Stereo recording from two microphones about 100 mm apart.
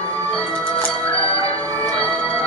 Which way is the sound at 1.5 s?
15° left (ahead or behind).